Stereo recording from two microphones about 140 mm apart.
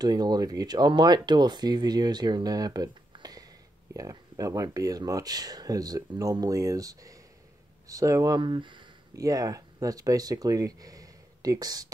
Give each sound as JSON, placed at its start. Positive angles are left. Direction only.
{"t": 0.0, "sound": "speech", "side_deg": -30}
{"t": 9.1, "sound": "speech", "side_deg": -25}